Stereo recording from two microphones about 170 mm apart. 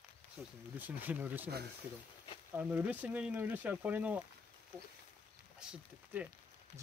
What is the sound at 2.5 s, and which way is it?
Speech, 10° right (ahead or behind).